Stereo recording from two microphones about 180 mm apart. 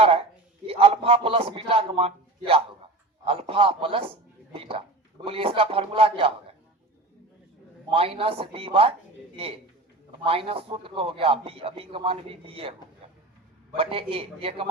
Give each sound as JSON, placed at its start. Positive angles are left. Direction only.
{"t": 0.0, "sound": "a sound", "side_deg": -30}
{"t": 0.7, "sound": "a man's voice", "side_deg": -30}
{"t": 7.9, "sound": "a man's voice", "side_deg": -30}
{"t": 13.7, "sound": "a man's voice", "side_deg": -30}